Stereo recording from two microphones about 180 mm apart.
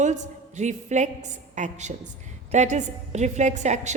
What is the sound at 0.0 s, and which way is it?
A woman's voice, 40° right (ahead or behind).